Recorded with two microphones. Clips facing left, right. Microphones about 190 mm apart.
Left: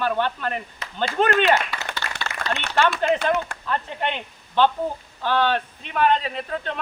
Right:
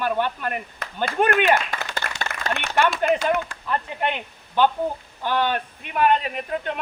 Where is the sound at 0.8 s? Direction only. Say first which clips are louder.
Right 2 dB; 55° right (ahead or behind).